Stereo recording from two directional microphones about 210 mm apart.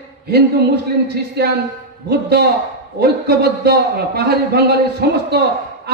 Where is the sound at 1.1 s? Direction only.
50° right (ahead or behind).